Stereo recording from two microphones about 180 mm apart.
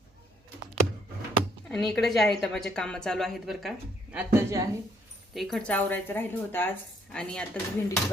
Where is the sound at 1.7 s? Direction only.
Centre (ahead or behind); by 4.7 s 15° right (ahead or behind).